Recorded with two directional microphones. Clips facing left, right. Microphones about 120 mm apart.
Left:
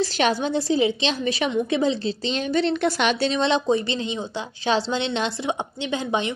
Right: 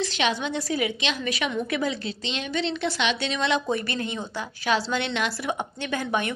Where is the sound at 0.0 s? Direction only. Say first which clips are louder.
Left 4 dB; 40° left (ahead or behind).